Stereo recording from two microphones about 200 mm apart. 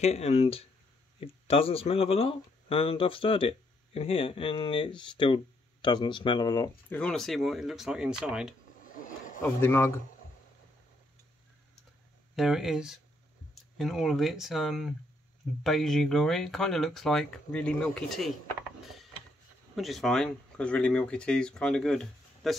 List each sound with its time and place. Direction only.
0.0 s speech: 35° left (ahead or behind)
6.9 s speech: 5° left (ahead or behind)
8.7 s a sound: 40° left (ahead or behind)
9.4 s speech: 10° left (ahead or behind)
12.4 s speech: centre (ahead or behind)
19.7 s speech: centre (ahead or behind)